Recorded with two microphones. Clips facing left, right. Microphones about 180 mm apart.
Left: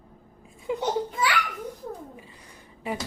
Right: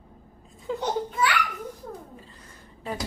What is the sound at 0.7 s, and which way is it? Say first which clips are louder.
Babbling: left 2 dB; 15° left (ahead or behind).